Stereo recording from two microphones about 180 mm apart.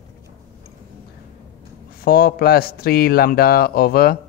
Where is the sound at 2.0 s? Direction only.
55° left (ahead or behind).